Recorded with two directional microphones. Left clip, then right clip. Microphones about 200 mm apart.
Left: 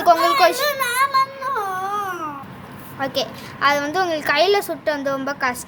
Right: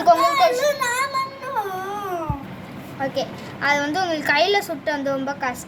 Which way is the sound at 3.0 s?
20° left (ahead or behind).